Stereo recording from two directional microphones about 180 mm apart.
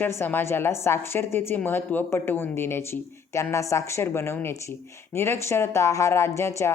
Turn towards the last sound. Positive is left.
turn(degrees=15)  # may be behind; listen again after turning